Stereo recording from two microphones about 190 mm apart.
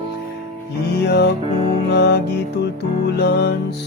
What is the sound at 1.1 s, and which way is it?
Music, 60° left (ahead or behind).